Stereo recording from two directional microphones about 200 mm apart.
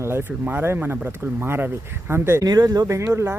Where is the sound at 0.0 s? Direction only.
10° right (ahead or behind).